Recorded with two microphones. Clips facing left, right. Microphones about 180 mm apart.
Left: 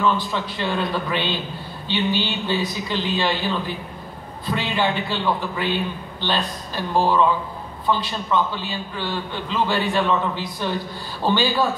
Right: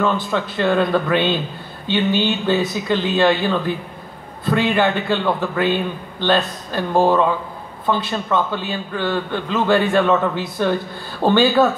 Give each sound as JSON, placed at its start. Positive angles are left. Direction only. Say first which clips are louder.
{"t": 0.0, "sound": "a man's voice", "louder": "right 2 dB", "side_deg": -50}